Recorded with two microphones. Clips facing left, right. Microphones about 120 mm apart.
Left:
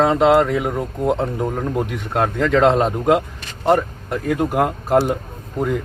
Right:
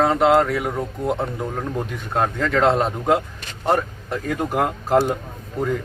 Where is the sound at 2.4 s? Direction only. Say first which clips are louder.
Left 4 dB; 20° left (ahead or behind).